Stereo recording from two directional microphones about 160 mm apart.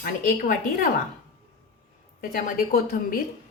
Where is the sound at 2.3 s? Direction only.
65° left (ahead or behind).